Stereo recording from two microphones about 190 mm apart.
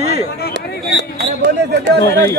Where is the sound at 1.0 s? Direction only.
65° right (ahead or behind).